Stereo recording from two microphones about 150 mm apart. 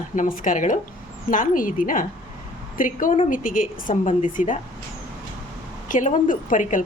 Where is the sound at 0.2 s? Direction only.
60° left (ahead or behind).